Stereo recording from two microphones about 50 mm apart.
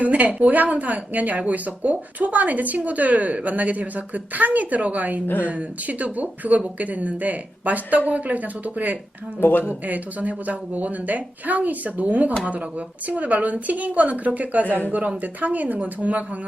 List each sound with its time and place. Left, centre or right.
0.0 s speech: right
9.4 s speech: left
9.6 s speech: right